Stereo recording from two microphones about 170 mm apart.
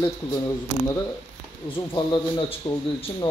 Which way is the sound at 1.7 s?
30° left (ahead or behind).